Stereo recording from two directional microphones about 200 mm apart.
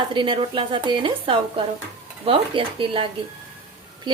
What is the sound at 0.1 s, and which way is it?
A woman's voice, 25° right (ahead or behind).